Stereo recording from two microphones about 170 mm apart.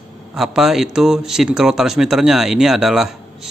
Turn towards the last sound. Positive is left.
turn(degrees=0)  # may be behind; listen again after turning